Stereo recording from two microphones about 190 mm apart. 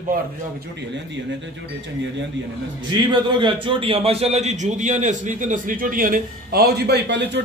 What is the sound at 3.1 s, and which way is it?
A man's voice, 25° right (ahead or behind).